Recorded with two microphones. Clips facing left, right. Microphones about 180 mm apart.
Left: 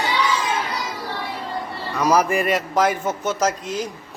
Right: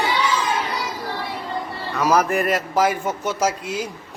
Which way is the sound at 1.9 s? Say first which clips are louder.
Even; centre (ahead or behind).